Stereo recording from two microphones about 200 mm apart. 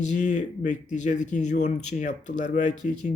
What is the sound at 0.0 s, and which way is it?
Speech, 35° left (ahead or behind).